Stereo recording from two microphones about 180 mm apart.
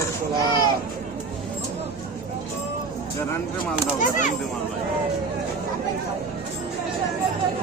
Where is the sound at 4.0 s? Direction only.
45° left (ahead or behind).